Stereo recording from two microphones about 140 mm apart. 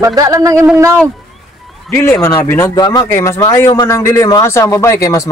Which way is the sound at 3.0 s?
20° left (ahead or behind).